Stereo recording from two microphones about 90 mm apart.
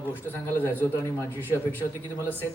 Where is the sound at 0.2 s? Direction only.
25° left (ahead or behind).